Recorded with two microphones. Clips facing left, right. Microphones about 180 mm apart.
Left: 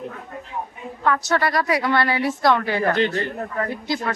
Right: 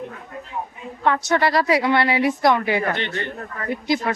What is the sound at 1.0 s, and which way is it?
A woman's voice, 25° right (ahead or behind).